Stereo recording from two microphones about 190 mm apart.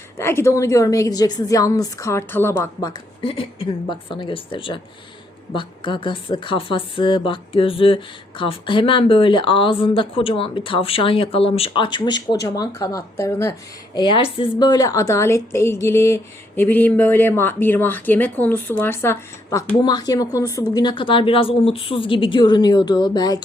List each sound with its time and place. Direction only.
0.2 s speech: 15° left (ahead or behind)
3.2 s a woman's voice: 30° left (ahead or behind)
13.9 s a woman's voice: 25° left (ahead or behind)